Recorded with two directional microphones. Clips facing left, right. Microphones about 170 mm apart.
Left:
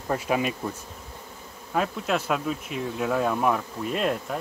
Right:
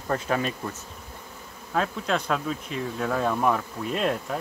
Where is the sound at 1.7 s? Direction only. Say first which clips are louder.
Even; 5° left (ahead or behind).